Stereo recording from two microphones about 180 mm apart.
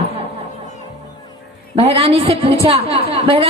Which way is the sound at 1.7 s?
30° right (ahead or behind).